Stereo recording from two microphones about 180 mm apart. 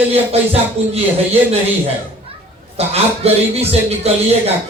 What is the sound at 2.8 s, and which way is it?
Music, 35° right (ahead or behind).